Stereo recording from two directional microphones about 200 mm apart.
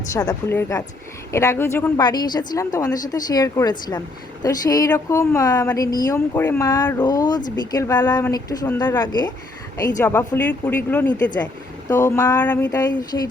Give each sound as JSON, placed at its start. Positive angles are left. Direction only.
{"t": 0.1, "sound": "speech", "side_deg": 15}